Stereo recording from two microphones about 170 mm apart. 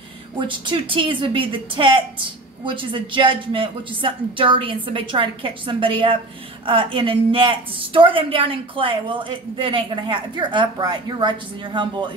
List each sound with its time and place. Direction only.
0.4 s a woman's voice: 30° right (ahead or behind)